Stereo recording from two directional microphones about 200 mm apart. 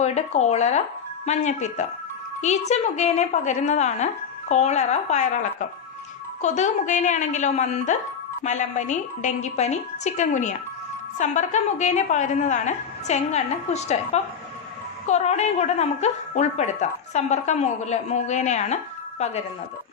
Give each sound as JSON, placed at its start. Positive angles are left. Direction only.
{"t": 0.0, "sound": "a woman's voice", "side_deg": 35}